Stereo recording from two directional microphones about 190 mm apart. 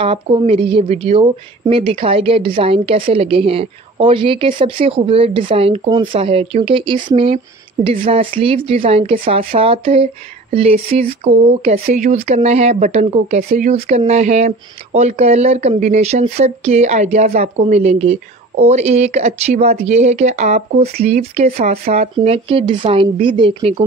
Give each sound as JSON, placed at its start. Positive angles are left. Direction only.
{"t": 0.0, "sound": "speech", "side_deg": -30}